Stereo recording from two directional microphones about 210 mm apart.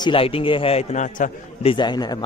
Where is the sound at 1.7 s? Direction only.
20° left (ahead or behind).